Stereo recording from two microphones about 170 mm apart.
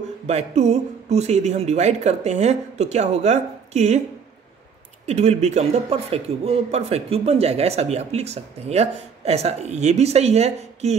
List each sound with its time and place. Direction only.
0.3 s speech: 40° right (ahead or behind)
5.0 s speech: 40° right (ahead or behind)